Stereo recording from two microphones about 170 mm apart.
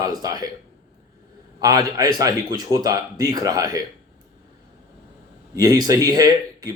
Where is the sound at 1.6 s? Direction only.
20° right (ahead or behind).